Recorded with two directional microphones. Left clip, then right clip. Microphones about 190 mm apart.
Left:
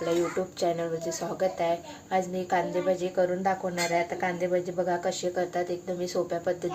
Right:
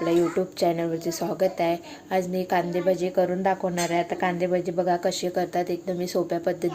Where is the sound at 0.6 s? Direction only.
35° right (ahead or behind).